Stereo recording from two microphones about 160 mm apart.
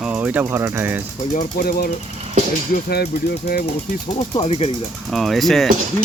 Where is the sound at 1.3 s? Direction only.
65° left (ahead or behind).